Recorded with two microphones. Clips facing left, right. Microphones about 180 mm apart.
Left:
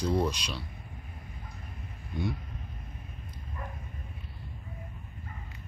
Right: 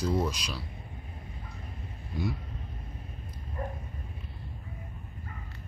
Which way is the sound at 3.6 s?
35° right (ahead or behind).